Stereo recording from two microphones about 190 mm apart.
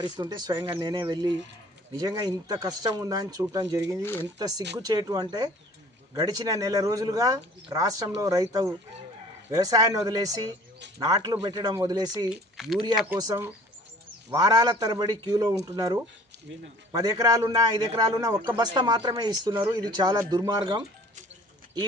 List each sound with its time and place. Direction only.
0.0 s speech: 20° right (ahead or behind)
4.0 s speech: 10° left (ahead or behind)
4.4 s speech: 20° right (ahead or behind)
12.3 s speech: centre (ahead or behind)
14.3 s speech: 20° right (ahead or behind)